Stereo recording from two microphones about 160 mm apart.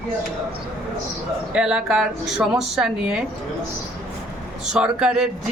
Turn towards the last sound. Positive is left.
turn(degrees=-5)  # may be behind; listen again after turning